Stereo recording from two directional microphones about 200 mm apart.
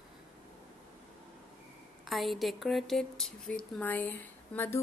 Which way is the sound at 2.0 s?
Centre (ahead or behind).